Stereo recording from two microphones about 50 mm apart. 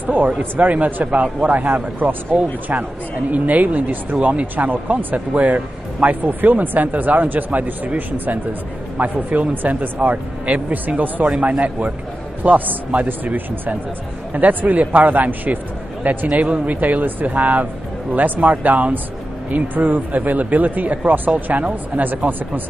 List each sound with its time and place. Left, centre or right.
0.0 s a sound: right
0.4 s speech: right
11.2 s a man's voice: right